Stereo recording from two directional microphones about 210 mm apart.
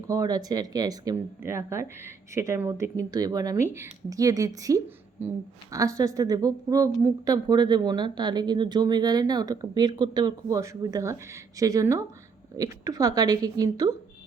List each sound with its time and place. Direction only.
0.1 s a woman's voice: 15° right (ahead or behind)